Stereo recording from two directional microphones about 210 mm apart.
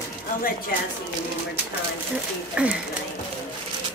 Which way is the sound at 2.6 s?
5° right (ahead or behind).